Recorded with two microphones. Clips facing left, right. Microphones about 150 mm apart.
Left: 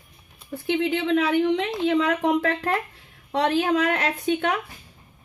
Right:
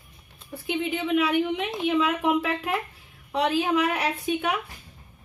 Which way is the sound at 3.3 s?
70° left (ahead or behind).